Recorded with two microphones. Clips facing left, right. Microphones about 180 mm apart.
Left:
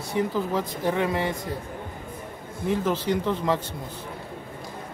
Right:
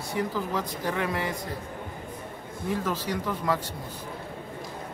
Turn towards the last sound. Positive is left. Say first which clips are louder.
# left 4 dB
turn(degrees=25)  # may be behind; listen again after turning